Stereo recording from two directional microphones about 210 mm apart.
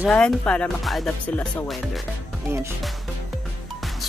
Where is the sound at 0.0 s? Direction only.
5° left (ahead or behind).